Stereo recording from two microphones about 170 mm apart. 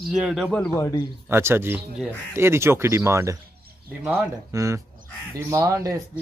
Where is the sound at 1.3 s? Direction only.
15° right (ahead or behind).